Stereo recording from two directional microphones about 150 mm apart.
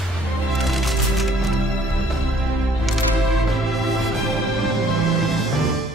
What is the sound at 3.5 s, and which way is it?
Music, centre (ahead or behind).